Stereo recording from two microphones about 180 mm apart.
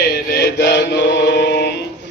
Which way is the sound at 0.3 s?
70° left (ahead or behind).